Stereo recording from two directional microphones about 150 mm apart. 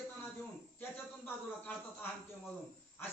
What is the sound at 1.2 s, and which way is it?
Speech, 15° left (ahead or behind).